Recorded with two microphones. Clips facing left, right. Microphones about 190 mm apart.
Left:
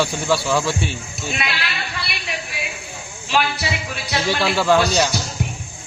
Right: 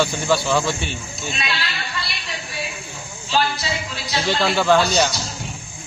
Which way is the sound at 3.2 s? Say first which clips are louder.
Left 1 dB; 70° left (ahead or behind).